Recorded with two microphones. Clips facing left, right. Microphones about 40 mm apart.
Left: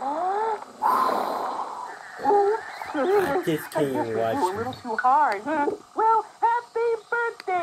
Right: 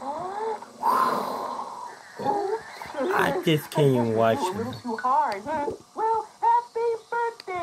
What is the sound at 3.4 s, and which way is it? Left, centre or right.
Speech, right.